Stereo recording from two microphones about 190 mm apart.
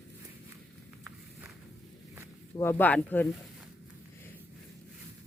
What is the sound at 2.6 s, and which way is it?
Speech, 10° left (ahead or behind).